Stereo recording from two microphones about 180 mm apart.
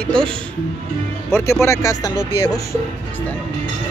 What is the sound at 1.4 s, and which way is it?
Speech, 15° left (ahead or behind).